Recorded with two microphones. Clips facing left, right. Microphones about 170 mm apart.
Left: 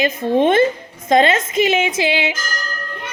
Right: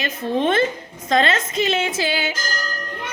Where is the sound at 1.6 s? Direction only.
20° left (ahead or behind).